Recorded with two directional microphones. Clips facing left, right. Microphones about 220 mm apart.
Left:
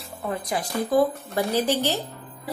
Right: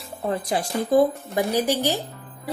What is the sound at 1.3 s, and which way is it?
Speech, 15° right (ahead or behind).